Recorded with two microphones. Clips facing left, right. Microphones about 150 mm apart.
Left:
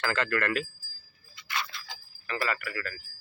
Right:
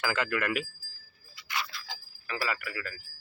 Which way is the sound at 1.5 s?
15° right (ahead or behind).